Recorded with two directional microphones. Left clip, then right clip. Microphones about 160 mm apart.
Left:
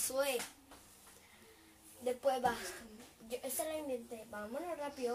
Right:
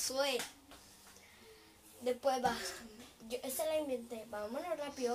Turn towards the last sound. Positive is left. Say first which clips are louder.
# right 2 dB
turn(degrees=0)  # may be behind; listen again after turning